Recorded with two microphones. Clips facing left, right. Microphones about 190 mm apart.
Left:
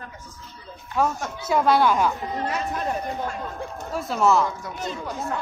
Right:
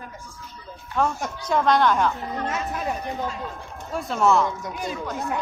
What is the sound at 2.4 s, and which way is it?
Speech, centre (ahead or behind).